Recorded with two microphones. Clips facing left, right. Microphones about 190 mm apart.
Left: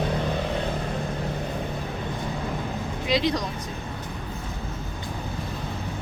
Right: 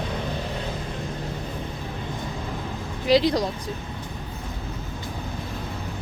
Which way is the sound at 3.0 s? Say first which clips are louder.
Right 5 dB; 35° right (ahead or behind).